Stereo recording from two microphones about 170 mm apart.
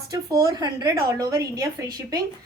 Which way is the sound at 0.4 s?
20° right (ahead or behind).